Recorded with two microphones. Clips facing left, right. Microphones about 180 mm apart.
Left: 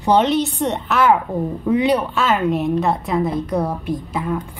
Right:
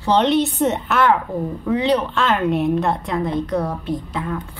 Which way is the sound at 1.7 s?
15° left (ahead or behind).